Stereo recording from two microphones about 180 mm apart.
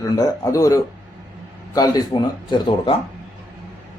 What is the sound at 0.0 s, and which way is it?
A man's voice, 20° left (ahead or behind).